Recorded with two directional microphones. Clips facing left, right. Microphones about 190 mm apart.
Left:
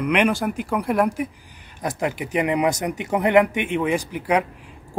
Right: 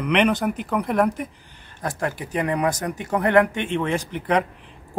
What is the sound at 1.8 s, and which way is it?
Speech, 15° left (ahead or behind).